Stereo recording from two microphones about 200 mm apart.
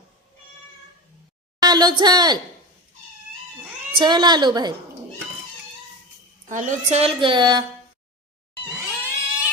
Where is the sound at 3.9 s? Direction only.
20° right (ahead or behind).